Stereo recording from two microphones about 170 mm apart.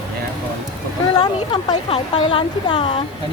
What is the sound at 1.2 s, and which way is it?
Speech, 30° left (ahead or behind).